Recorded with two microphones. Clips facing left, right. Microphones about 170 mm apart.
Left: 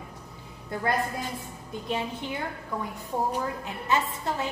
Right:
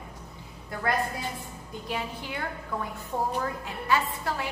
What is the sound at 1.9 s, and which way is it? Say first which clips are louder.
Speech: left 3 dB; 25° left (ahead or behind).